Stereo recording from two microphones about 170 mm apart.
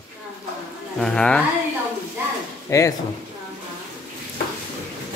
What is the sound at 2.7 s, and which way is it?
Speech, 20° left (ahead or behind).